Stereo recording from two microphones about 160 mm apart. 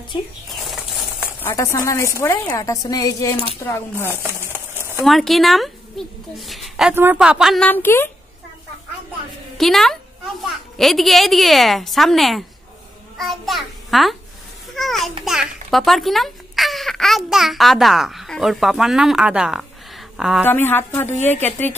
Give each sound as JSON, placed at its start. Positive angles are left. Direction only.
{"t": 0.5, "sound": "a sound", "side_deg": 0}
{"t": 1.4, "sound": "a woman's voice", "side_deg": 20}
{"t": 4.2, "sound": "a sound", "side_deg": -15}
{"t": 5.0, "sound": "a woman's voice", "side_deg": 0}
{"t": 9.6, "sound": "a child's voice", "side_deg": 0}
{"t": 20.4, "sound": "a woman's voice", "side_deg": 15}